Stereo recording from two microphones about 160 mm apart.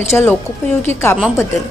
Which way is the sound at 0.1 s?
10° left (ahead or behind).